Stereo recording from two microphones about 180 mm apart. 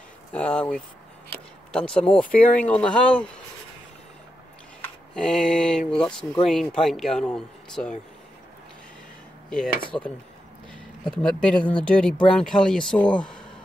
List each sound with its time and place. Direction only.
0.3 s speech: 5° left (ahead or behind)
4.8 s speech: 5° left (ahead or behind)
9.8 s speech: 25° left (ahead or behind)
10.7 s speech: 5° left (ahead or behind)